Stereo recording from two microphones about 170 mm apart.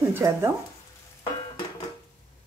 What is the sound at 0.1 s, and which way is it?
Speech, 15° right (ahead or behind).